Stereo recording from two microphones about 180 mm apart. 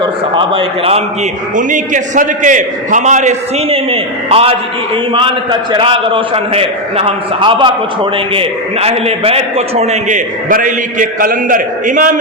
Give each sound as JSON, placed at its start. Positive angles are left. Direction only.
{"t": 0.0, "sound": "a man's voice", "side_deg": -30}
{"t": 1.5, "sound": "a man's voice", "side_deg": -45}